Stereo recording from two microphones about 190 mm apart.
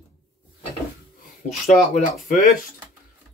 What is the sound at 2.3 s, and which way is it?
Speech, 45° left (ahead or behind).